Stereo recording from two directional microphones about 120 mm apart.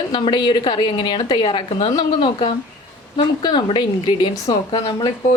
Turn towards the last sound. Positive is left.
turn(degrees=40)  # may be behind; listen again after turning